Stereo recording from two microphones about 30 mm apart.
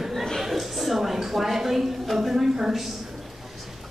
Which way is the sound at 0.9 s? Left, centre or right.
Centre.